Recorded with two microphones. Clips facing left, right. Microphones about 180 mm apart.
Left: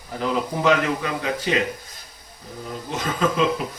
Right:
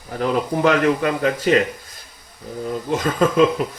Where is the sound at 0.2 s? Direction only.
50° right (ahead or behind).